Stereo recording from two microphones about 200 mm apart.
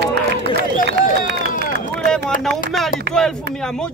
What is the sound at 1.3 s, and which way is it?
Run, 50° right (ahead or behind).